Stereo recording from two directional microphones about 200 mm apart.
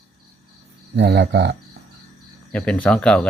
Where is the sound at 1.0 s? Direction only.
55° right (ahead or behind).